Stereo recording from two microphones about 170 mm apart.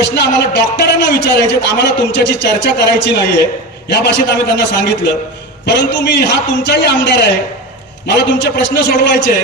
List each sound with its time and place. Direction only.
0.1 s a man's voice: 80° left